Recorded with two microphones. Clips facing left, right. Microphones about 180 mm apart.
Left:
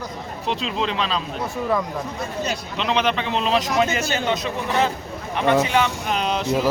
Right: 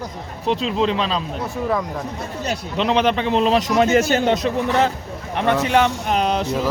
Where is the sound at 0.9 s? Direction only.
40° right (ahead or behind).